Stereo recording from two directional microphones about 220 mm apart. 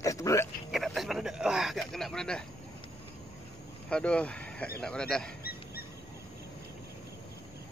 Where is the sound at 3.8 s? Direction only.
5° left (ahead or behind).